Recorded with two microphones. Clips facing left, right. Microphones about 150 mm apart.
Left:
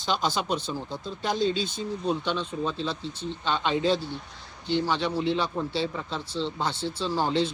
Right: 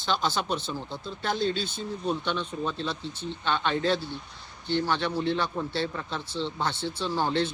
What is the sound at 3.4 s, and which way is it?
A man's voice, 5° left (ahead or behind).